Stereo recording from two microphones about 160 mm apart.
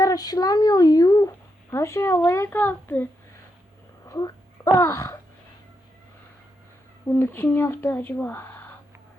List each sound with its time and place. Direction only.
0.0 s a sound: 25° left (ahead or behind)
1.7 s speech: 15° left (ahead or behind)
4.1 s a child's voice: 20° left (ahead or behind)
7.1 s speech: 15° left (ahead or behind)